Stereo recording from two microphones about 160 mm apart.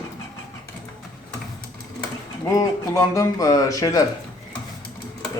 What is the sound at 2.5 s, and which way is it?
Speech, 20° left (ahead or behind).